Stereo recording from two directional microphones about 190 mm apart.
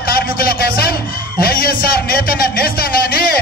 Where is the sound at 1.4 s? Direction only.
50° left (ahead or behind).